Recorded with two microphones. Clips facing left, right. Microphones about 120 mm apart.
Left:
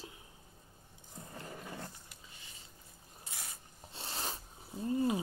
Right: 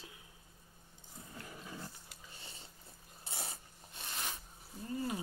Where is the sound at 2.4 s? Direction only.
30° right (ahead or behind).